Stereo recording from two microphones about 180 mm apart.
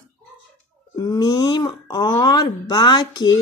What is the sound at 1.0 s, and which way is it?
Speech, 20° left (ahead or behind).